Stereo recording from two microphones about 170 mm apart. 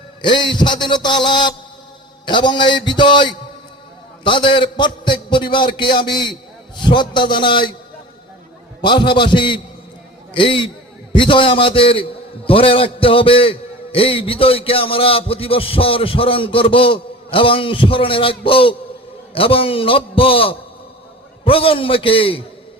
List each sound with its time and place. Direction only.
0.2 s a man's voice: 25° left (ahead or behind)
8.8 s a man's voice: 30° left (ahead or behind)